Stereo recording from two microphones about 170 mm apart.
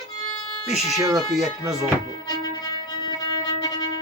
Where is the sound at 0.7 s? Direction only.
Centre (ahead or behind).